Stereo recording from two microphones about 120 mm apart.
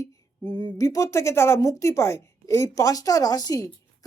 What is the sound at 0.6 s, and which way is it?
A woman's voice, 25° left (ahead or behind).